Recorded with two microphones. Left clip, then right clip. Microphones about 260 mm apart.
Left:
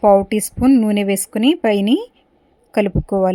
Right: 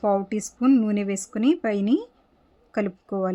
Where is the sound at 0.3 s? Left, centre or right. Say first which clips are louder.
Left 9 dB; centre.